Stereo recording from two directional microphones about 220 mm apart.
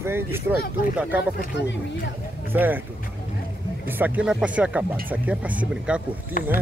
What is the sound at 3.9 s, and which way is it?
Speech, 10° right (ahead or behind).